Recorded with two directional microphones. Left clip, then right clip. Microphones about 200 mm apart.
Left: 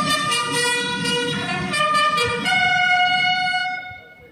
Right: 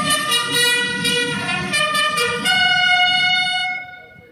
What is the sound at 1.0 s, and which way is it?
Music, 15° right (ahead or behind).